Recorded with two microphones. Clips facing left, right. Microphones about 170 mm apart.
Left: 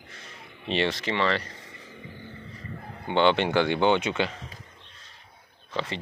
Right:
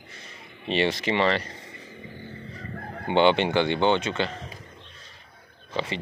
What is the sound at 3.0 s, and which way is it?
Fowl, 15° right (ahead or behind).